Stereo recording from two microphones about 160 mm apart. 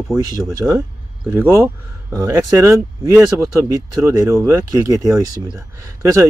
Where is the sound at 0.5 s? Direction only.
20° right (ahead or behind).